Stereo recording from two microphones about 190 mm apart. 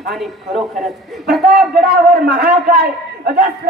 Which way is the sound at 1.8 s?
55° right (ahead or behind).